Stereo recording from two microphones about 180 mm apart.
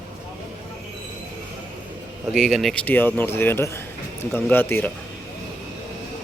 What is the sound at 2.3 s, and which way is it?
A man's voice, centre (ahead or behind).